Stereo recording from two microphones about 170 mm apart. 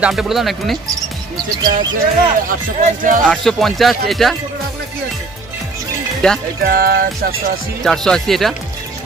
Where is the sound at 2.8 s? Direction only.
50° right (ahead or behind).